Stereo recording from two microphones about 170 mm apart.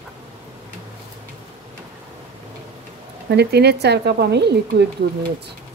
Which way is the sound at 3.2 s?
75° right (ahead or behind).